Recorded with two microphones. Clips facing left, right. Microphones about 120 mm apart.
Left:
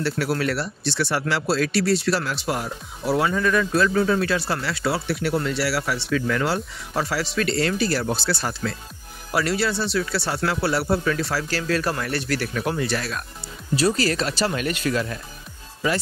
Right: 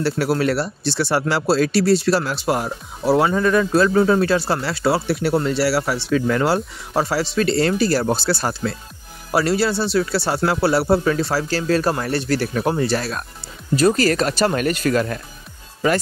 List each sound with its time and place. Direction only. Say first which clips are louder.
0.0 s speech: right 4 dB; 35° right (ahead or behind)
13.7 s speech: right 5 dB; 50° right (ahead or behind)